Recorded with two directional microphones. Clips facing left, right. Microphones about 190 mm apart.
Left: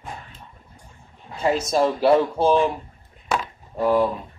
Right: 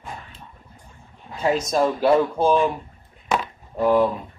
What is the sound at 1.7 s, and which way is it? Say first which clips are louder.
Speech: left 1 dB; 5° left (ahead or behind).